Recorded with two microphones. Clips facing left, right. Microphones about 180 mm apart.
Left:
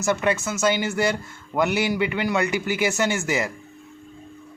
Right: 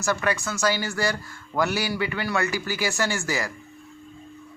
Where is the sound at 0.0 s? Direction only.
20° left (ahead or behind).